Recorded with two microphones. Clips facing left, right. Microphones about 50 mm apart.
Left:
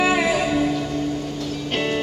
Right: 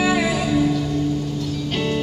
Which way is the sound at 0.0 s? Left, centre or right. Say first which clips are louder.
Left 1 dB; centre.